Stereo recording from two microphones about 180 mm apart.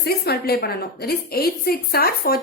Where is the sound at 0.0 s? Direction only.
60° left (ahead or behind).